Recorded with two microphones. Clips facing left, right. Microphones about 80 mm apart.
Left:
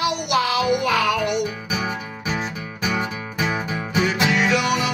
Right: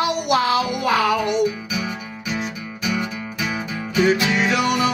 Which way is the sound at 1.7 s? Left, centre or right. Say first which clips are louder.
Left 1 dB; left.